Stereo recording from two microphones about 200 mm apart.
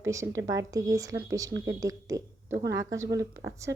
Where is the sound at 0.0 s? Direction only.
15° right (ahead or behind).